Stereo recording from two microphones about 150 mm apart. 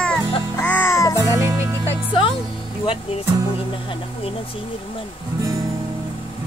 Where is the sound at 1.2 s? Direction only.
20° right (ahead or behind).